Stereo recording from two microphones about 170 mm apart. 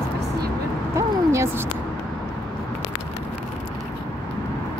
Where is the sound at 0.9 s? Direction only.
15° right (ahead or behind).